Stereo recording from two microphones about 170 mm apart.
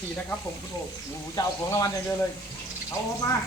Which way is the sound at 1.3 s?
20° left (ahead or behind).